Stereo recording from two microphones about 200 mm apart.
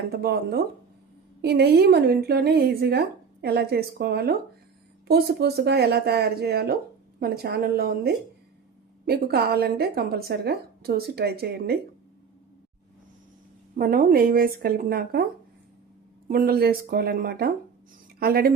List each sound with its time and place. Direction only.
0.1 s a woman's voice: 50° right (ahead or behind)
13.7 s a woman's voice: 45° right (ahead or behind)
16.3 s a woman's voice: 50° right (ahead or behind)